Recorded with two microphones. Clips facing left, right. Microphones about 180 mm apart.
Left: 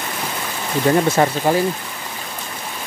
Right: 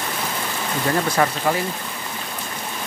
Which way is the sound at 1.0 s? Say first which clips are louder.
Left 4 dB; 25° left (ahead or behind).